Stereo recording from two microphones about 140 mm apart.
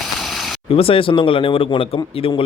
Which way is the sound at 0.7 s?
40° left (ahead or behind).